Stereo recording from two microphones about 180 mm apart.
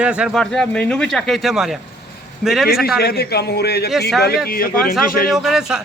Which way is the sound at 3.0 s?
60° left (ahead or behind).